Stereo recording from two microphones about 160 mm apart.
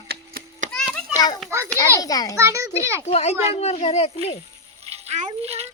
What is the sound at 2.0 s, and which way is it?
Speech, 25° left (ahead or behind).